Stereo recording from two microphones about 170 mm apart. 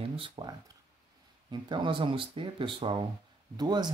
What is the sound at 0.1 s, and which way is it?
Speech, 30° right (ahead or behind).